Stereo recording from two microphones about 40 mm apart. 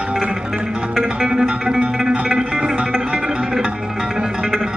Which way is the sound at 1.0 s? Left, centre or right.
Right.